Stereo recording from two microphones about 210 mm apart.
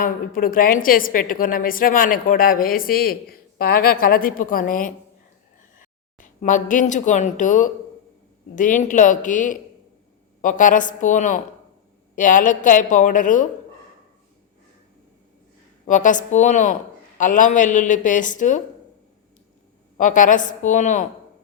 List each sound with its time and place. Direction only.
0.0 s a woman's voice: 40° left (ahead or behind)
15.9 s a woman's voice: 35° left (ahead or behind)
20.0 s a woman's voice: 40° left (ahead or behind)